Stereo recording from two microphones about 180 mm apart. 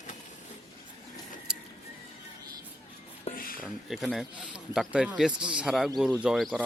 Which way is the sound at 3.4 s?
55° left (ahead or behind).